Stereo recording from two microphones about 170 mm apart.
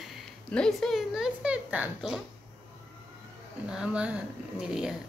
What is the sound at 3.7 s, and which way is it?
Speech, 5° right (ahead or behind).